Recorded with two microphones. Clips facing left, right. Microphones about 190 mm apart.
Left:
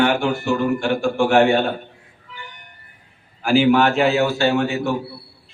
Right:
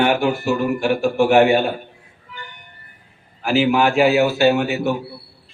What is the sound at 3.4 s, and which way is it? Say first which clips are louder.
A man's voice: left 2 dB; 5° right (ahead or behind).